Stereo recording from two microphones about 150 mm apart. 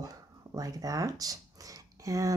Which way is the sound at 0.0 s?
25° right (ahead or behind).